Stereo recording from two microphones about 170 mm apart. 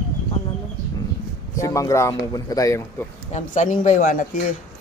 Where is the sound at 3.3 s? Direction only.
45° left (ahead or behind).